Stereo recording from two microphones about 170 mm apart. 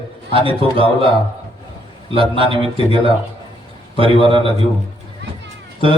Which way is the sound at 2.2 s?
30° right (ahead or behind).